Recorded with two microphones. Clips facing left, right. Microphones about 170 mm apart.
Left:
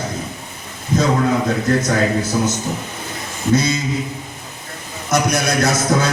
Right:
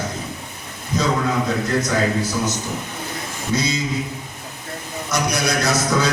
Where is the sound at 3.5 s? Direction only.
50° left (ahead or behind).